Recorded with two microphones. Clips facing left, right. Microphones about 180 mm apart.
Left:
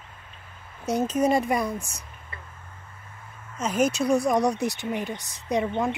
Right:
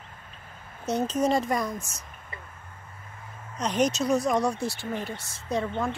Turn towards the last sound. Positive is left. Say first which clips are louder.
# left 3 dB
turn(degrees=20)  # may be behind; listen again after turning